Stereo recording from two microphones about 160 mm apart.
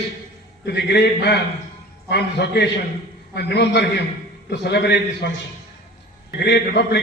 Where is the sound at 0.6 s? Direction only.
90° left.